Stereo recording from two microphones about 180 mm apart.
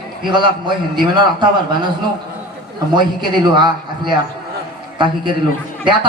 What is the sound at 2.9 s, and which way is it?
A man's voice, 25° right (ahead or behind).